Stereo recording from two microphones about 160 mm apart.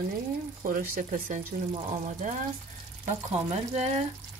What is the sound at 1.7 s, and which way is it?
Speech, 45° right (ahead or behind).